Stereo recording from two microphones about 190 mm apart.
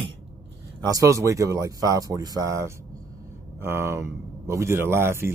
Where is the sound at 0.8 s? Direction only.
15° right (ahead or behind).